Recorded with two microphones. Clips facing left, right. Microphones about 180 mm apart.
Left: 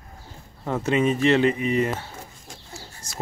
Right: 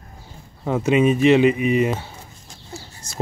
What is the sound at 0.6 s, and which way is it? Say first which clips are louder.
Speech: right 5 dB; 15° right (ahead or behind).